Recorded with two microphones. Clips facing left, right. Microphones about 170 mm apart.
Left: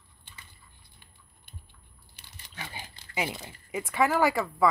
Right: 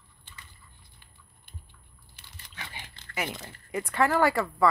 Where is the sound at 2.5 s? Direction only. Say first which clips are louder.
Left 3 dB; 35° left (ahead or behind).